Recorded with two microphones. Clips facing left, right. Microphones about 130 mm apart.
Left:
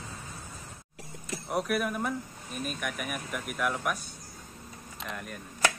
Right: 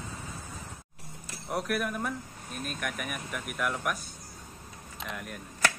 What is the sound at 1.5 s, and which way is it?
Speech, centre (ahead or behind).